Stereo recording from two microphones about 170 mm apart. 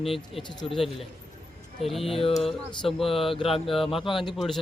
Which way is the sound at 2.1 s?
35° left (ahead or behind).